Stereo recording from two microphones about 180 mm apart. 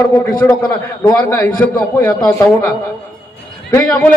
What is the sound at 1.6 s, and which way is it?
Speech, 10° left (ahead or behind).